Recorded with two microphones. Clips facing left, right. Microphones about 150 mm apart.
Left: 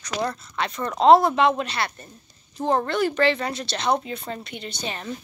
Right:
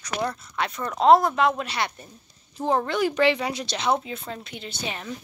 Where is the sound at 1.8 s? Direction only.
15° right (ahead or behind).